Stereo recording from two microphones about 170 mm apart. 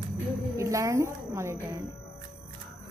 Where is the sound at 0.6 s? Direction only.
20° right (ahead or behind).